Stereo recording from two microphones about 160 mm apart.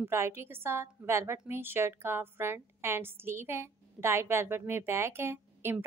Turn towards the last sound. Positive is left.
turn(degrees=-15)  # may be behind; listen again after turning